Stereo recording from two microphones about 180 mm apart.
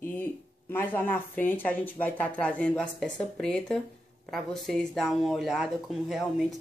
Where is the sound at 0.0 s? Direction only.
10° left (ahead or behind).